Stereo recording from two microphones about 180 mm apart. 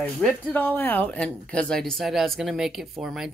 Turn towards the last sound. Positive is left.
turn(degrees=0)  # may be behind; listen again after turning